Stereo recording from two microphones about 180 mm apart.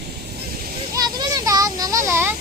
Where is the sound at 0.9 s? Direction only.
20° right (ahead or behind).